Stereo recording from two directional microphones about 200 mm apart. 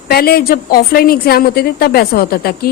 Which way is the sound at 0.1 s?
50° left (ahead or behind).